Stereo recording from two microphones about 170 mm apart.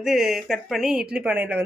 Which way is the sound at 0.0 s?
Centre (ahead or behind).